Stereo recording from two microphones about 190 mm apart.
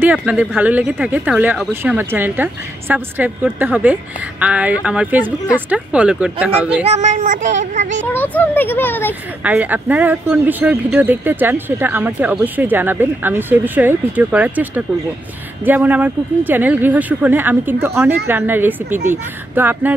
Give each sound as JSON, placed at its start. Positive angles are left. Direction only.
{"t": 0.0, "sound": "speech", "side_deg": -5}
{"t": 6.8, "sound": "speech", "side_deg": -35}
{"t": 8.1, "sound": "speech", "side_deg": 10}
{"t": 9.4, "sound": "speech", "side_deg": -10}